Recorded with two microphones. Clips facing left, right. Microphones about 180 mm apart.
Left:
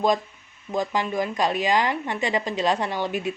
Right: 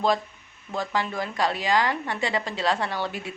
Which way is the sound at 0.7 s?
15° left (ahead or behind).